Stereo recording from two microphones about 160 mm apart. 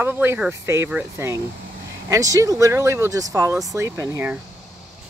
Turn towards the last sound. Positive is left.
turn(degrees=-15)  # may be behind; listen again after turning